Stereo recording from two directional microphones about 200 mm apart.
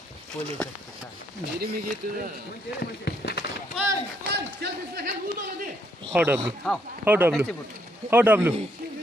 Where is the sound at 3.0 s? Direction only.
55° left (ahead or behind).